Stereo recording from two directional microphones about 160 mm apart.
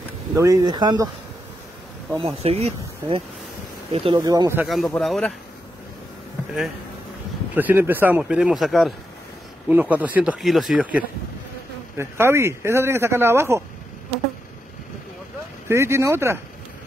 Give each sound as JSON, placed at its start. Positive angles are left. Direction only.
{"t": 0.3, "sound": "speech", "side_deg": -20}
{"t": 2.2, "sound": "speech", "side_deg": -40}
{"t": 4.2, "sound": "speech", "side_deg": -25}
{"t": 4.6, "sound": "speech", "side_deg": 0}
{"t": 7.5, "sound": "speech", "side_deg": -10}
{"t": 9.7, "sound": "speech", "side_deg": -10}
{"t": 15.7, "sound": "speech", "side_deg": -15}